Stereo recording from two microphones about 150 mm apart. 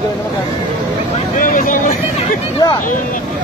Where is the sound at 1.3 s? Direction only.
60° left (ahead or behind).